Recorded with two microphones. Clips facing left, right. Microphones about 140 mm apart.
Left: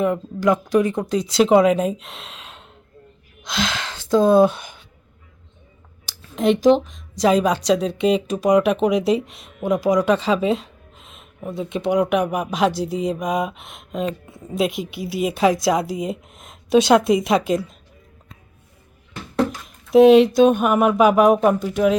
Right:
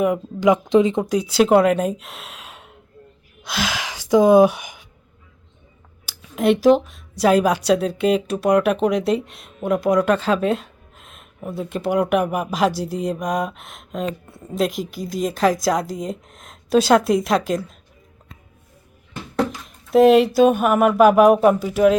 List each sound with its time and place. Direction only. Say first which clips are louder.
0.0 s speech: right 2 dB; 15° right (ahead or behind)
1.0 s speech: right 1 dB; 10° right (ahead or behind)
3.4 s gasp: even; 5° right (ahead or behind)
6.1 s speech: right 1 dB; 5° right (ahead or behind)
19.6 s speech: left 2 dB; centre (ahead or behind)